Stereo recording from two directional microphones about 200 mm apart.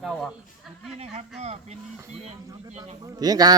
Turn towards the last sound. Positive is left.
turn(degrees=-20)  # may be behind; listen again after turning